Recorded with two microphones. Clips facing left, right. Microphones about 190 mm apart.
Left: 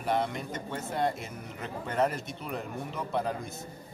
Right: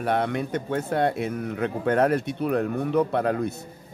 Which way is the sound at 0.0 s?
65° right (ahead or behind).